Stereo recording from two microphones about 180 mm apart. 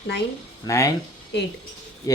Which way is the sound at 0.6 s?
20° left (ahead or behind).